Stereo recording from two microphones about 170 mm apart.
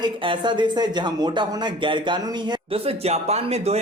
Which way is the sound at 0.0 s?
30° right (ahead or behind).